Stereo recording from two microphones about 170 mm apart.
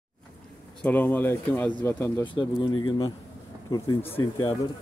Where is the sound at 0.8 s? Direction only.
10° left (ahead or behind).